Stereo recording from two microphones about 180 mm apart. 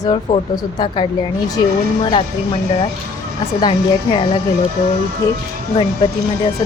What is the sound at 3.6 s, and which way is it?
Speech, 25° left (ahead or behind).